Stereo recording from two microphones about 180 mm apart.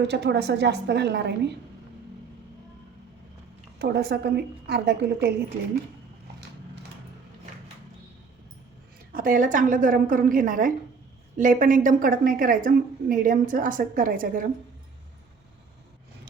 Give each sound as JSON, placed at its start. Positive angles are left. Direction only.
{"t": 0.0, "sound": "a woman's voice", "side_deg": -70}
{"t": 3.8, "sound": "a woman's voice", "side_deg": -65}
{"t": 9.1, "sound": "a woman's voice", "side_deg": -50}